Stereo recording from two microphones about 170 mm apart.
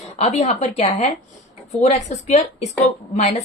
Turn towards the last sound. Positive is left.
turn(degrees=40)  # may be behind; listen again after turning